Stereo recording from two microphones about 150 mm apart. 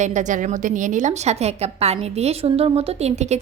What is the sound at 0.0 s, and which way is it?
A woman's voice, 55° right (ahead or behind).